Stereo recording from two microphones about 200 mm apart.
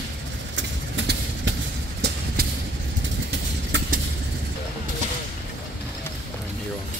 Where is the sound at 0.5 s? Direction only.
65° right (ahead or behind).